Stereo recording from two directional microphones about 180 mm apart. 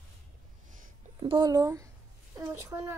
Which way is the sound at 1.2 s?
25° right (ahead or behind).